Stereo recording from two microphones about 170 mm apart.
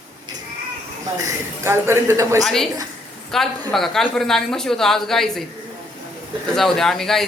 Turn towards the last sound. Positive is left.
turn(degrees=0)  # may be behind; listen again after turning